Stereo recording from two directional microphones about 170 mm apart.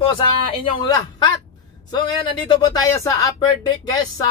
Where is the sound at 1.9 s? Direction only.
25° left (ahead or behind).